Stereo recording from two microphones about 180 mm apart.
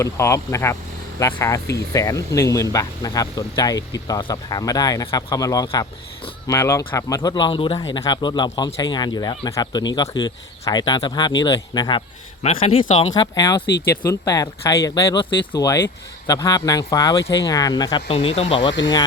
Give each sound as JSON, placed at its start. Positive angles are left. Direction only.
{"t": 0.0, "sound": "speech", "side_deg": 15}
{"t": 13.1, "sound": "speech", "side_deg": 20}
{"t": 18.1, "sound": "speech", "side_deg": 35}